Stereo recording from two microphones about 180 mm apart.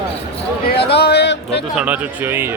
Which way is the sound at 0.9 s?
65° left (ahead or behind).